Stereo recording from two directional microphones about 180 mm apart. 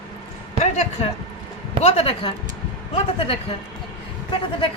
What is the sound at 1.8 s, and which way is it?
Speech, 35° left (ahead or behind).